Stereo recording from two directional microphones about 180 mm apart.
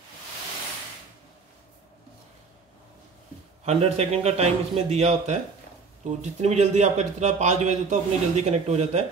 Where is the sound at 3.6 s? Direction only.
35° right (ahead or behind).